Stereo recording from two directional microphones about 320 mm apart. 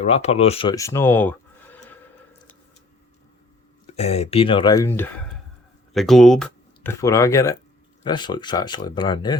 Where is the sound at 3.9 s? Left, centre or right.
Centre.